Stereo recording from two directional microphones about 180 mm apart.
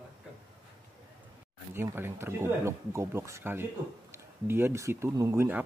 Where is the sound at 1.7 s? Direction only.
15° right (ahead or behind).